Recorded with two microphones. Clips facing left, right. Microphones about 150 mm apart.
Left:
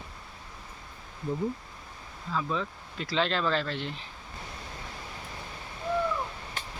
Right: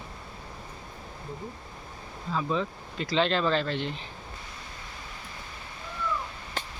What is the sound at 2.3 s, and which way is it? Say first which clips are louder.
Speech: right 2 dB; centre (ahead or behind).